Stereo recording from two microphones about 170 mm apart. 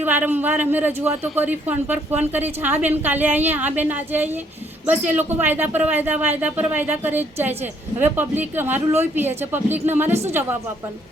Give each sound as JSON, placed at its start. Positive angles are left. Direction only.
{"t": 0.0, "sound": "speech", "side_deg": -10}
{"t": 10.1, "sound": "speech", "side_deg": -40}